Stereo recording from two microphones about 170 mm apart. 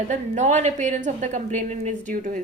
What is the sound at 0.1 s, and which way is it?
A woman's voice, 45° right (ahead or behind).